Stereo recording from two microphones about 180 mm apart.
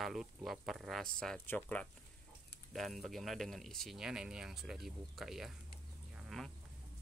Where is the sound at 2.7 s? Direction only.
Centre (ahead or behind).